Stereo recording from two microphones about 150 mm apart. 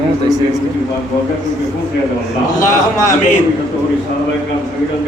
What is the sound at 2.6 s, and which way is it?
Speech, 20° left (ahead or behind).